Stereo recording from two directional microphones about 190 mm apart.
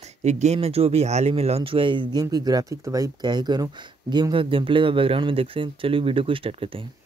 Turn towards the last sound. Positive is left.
turn(degrees=-30)  # may be behind; listen again after turning